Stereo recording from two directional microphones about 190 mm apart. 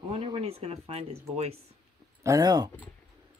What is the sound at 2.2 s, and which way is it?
Speech, 20° right (ahead or behind).